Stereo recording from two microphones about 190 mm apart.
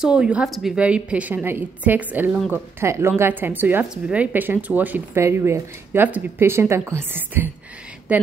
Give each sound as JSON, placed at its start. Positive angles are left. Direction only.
{"t": 0.0, "sound": "a woman's voice", "side_deg": -5}